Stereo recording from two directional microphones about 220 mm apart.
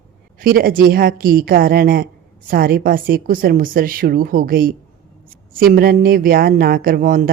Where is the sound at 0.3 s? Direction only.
40° right (ahead or behind).